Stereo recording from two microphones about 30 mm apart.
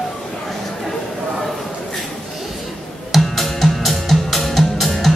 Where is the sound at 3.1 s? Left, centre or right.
Centre.